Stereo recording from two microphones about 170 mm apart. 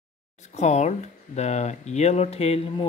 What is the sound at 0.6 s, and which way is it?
Speech, 40° left (ahead or behind).